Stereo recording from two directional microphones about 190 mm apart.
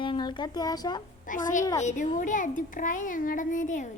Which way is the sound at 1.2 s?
45° left (ahead or behind).